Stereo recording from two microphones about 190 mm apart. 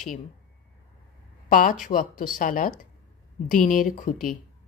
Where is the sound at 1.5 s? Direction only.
45° left (ahead or behind).